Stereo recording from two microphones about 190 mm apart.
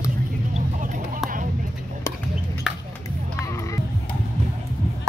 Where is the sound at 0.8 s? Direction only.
45° right (ahead or behind).